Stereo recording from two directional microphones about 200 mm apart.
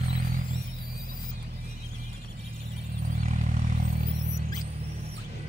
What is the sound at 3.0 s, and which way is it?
Vehicle, 40° right (ahead or behind).